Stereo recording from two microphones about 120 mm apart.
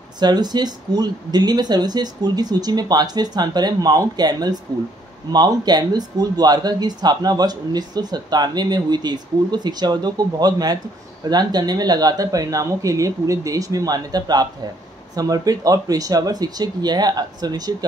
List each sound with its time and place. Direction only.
0.2 s speech: 35° right (ahead or behind)